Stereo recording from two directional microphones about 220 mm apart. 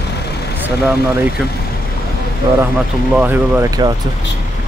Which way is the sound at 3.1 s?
10° right (ahead or behind).